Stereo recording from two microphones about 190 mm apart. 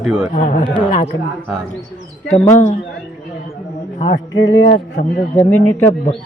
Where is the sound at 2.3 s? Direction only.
40° left (ahead or behind).